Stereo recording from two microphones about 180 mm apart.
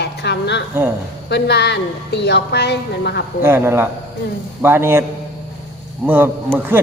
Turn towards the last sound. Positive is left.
turn(degrees=-10)  # may be behind; listen again after turning